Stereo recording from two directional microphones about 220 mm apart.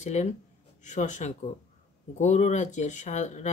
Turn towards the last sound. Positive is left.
turn(degrees=30)  # may be behind; listen again after turning